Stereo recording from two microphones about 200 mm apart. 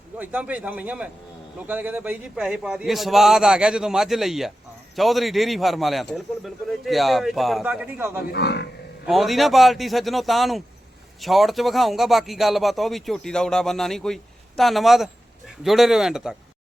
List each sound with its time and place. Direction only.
0.2 s a man's voice: 5° right (ahead or behind)
8.3 s speech: 55° left (ahead or behind)
9.0 s speech: centre (ahead or behind)